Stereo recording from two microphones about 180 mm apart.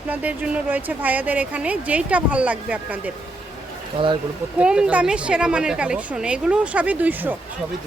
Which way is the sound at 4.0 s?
30° right (ahead or behind).